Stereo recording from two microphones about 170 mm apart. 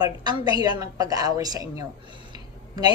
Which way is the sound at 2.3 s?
25° right (ahead or behind).